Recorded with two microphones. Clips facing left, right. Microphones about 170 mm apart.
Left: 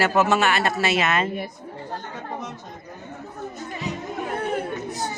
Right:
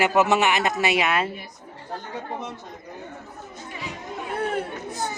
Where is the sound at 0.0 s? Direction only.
15° right (ahead or behind).